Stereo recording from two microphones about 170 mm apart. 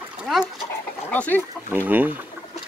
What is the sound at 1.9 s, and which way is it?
Speech, 10° right (ahead or behind).